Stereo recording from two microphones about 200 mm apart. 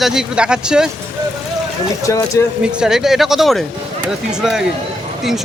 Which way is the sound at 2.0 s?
15° left (ahead or behind).